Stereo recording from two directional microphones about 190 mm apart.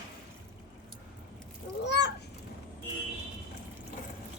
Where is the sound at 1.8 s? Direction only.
65° left (ahead or behind).